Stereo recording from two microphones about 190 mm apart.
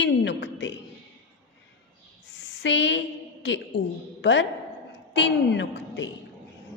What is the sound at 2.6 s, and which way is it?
Speech, 75° left (ahead or behind).